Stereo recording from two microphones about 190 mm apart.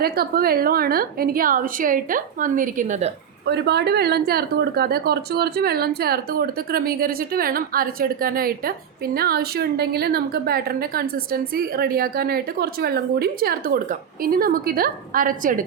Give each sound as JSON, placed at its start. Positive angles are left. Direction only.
{"t": 0.0, "sound": "speech", "side_deg": -55}
{"t": 3.4, "sound": "speech", "side_deg": -60}